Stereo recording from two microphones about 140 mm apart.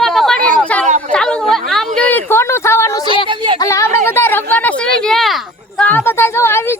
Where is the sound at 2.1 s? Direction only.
15° left (ahead or behind).